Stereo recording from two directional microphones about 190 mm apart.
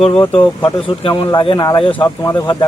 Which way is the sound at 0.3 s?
30° left (ahead or behind).